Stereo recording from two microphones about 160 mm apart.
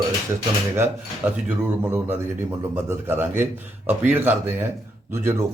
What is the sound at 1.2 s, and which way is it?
Speech, 10° right (ahead or behind).